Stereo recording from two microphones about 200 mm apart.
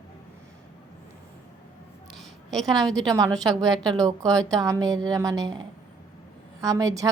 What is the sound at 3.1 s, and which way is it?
Speech, 15° right (ahead or behind).